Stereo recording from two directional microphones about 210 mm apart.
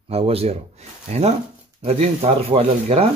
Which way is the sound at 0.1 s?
30° right (ahead or behind).